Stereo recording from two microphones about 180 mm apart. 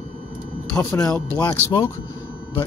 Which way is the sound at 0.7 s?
10° left (ahead or behind).